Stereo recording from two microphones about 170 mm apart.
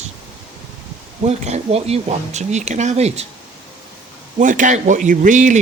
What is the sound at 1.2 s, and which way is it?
Speech, 40° right (ahead or behind).